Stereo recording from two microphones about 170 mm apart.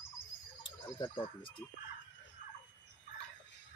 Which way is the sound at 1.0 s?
30° left (ahead or behind).